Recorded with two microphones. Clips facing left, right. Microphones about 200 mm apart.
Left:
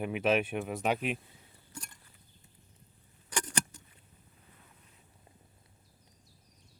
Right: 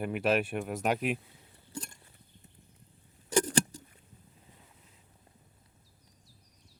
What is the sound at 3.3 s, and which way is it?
Keys jangling, 30° right (ahead or behind).